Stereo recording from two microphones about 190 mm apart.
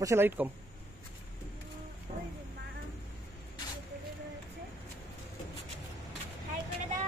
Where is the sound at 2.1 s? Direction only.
40° right (ahead or behind).